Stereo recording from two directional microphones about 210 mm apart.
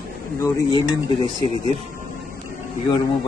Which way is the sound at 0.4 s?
15° left (ahead or behind).